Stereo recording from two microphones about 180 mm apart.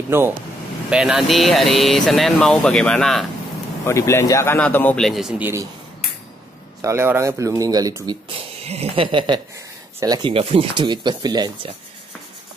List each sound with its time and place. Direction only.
0.1 s speech: 15° right (ahead or behind); by 3.3 s 5° left (ahead or behind)
3.8 s a man's voice: 15° left (ahead or behind); by 5.7 s 10° right (ahead or behind)
6.8 s speech: 15° right (ahead or behind)
8.6 s speech: 35° right (ahead or behind)